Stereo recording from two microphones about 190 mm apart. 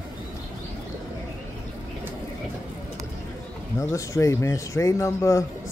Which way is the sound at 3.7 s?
15° left (ahead or behind).